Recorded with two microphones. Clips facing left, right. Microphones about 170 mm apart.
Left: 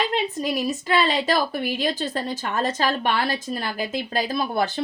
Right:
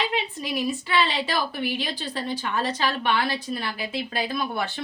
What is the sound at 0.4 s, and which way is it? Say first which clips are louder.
Speech: left 3 dB; 40° left (ahead or behind).